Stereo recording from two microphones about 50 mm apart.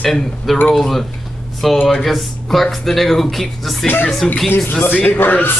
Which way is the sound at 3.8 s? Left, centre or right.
Left.